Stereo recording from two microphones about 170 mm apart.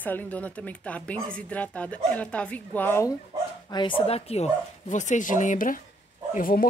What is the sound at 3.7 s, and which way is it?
Speech, 30° left (ahead or behind).